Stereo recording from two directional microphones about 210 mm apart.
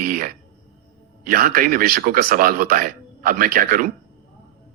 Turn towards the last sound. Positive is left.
turn(degrees=-40)  # may be behind; listen again after turning